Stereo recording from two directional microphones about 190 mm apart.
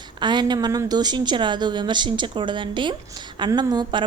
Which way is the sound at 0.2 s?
25° right (ahead or behind).